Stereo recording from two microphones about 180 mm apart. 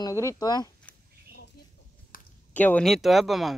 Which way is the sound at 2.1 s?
50° left (ahead or behind).